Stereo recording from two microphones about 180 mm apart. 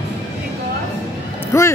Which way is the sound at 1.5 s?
15° left (ahead or behind).